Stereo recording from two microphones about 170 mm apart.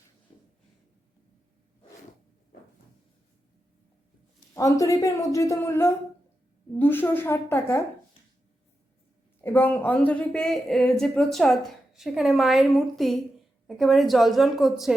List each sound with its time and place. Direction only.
4.5 s a woman's voice: 20° left (ahead or behind)
9.4 s a woman's voice: 15° left (ahead or behind)